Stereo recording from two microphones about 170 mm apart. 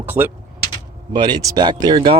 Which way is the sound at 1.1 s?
25° right (ahead or behind).